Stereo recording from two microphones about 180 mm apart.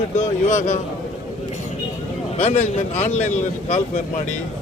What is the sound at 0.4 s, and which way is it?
Speech, 40° left (ahead or behind).